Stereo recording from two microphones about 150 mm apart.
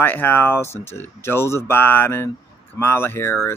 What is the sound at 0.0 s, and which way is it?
Speech, 15° left (ahead or behind).